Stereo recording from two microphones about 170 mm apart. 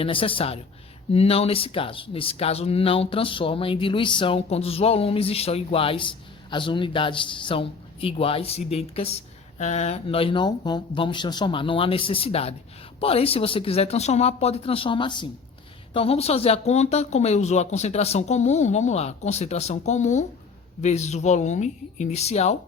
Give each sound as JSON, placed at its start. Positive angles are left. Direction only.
{"t": 0.0, "sound": "speech", "side_deg": 30}